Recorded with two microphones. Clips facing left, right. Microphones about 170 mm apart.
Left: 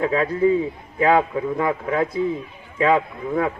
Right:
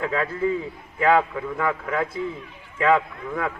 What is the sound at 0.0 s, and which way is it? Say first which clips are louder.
A man's voice: left 5 dB; 25° left (ahead or behind).